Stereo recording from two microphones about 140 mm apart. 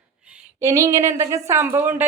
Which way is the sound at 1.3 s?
20° right (ahead or behind).